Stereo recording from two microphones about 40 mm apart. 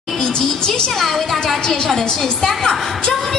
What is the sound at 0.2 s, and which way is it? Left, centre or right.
Speech, centre.